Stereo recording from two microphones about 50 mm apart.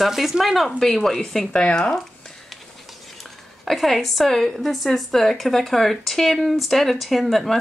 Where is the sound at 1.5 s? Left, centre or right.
Centre.